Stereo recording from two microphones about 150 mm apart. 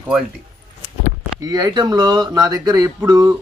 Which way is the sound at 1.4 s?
25° right (ahead or behind).